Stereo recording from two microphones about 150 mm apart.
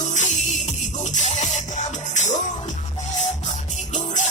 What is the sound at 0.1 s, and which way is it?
Music, 55° left (ahead or behind).